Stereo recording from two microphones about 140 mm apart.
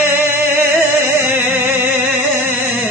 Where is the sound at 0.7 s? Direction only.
15° right (ahead or behind).